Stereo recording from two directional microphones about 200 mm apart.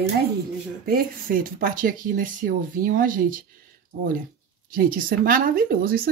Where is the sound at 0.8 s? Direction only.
45° right (ahead or behind).